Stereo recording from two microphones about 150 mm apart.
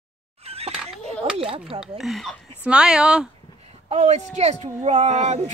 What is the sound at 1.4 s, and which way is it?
Speech, 40° right (ahead or behind).